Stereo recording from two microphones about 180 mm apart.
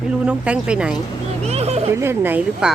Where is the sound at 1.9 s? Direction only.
15° right (ahead or behind).